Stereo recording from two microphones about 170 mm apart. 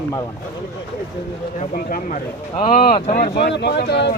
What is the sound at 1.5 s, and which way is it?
Speech, 55° left (ahead or behind).